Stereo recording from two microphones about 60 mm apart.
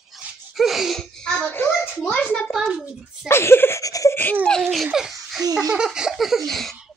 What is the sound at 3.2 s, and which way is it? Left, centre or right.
Speech, left.